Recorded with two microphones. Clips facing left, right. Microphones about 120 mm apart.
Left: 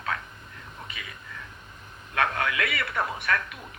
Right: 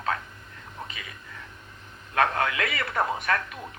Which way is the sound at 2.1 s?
35° right (ahead or behind).